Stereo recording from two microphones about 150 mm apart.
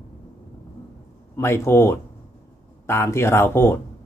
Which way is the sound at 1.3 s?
20° left (ahead or behind).